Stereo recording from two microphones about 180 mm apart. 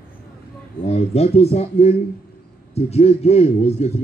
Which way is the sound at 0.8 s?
35° left (ahead or behind).